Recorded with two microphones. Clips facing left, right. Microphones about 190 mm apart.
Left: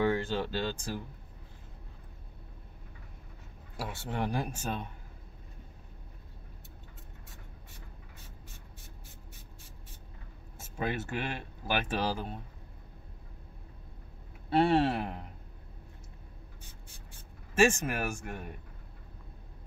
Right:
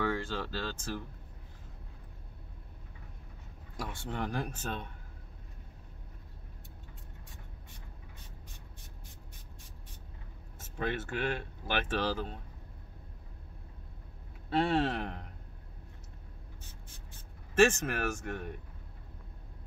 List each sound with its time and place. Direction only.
0.0 s speech: 20° left (ahead or behind)
3.7 s speech: 5° left (ahead or behind)
10.6 s speech: 10° left (ahead or behind)
14.7 s speech: 10° left (ahead or behind)
17.1 s speech: 10° left (ahead or behind)